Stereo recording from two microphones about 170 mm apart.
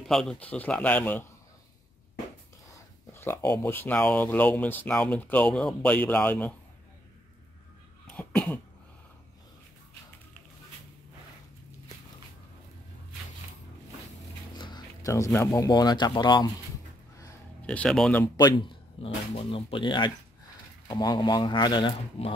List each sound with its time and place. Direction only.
0.0 s speech: 5° left (ahead or behind)
2.7 s speech: 15° left (ahead or behind)
8.1 s cough: 5° left (ahead or behind)
14.6 s speech: 20° left (ahead or behind)
17.6 s speech: 5° left (ahead or behind)
18.2 s speech: 20° left (ahead or behind)